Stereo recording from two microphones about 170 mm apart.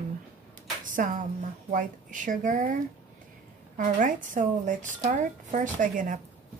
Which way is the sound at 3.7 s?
50° right (ahead or behind).